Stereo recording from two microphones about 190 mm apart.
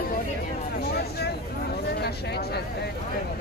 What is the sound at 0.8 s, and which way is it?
Vehicle, 55° left (ahead or behind).